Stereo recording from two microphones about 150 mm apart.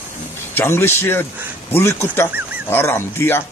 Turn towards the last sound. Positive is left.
turn(degrees=15)  # may be behind; listen again after turning